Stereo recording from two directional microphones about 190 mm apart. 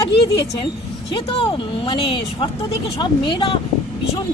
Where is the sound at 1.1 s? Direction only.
30° left (ahead or behind).